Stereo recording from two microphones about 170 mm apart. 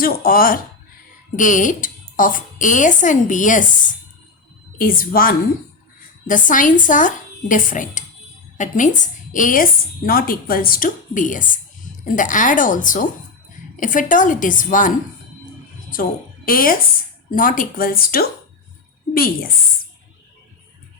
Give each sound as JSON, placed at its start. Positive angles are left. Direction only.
{"t": 0.0, "sound": "a woman's voice", "side_deg": 60}
{"t": 16.5, "sound": "a woman's voice", "side_deg": 55}